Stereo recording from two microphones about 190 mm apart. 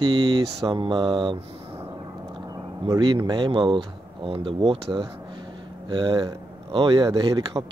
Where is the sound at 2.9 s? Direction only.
20° right (ahead or behind).